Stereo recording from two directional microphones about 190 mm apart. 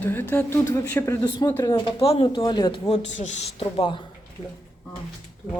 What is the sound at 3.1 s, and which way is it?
Speech, 35° left (ahead or behind).